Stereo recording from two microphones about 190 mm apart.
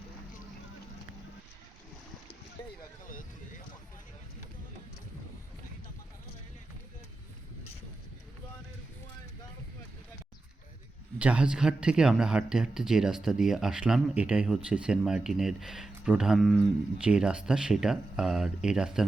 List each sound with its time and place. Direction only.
2.6 s a sound: 20° left (ahead or behind)
7.6 s vehicle: 30° left (ahead or behind)
11.2 s speech: 5° right (ahead or behind)